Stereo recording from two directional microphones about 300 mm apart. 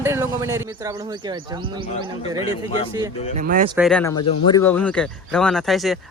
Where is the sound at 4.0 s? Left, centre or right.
Centre.